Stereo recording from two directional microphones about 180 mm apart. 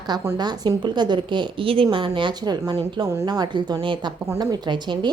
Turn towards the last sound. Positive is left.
turn(degrees=-25)  # may be behind; listen again after turning